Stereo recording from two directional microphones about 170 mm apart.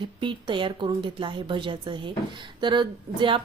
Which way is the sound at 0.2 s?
30° right (ahead or behind).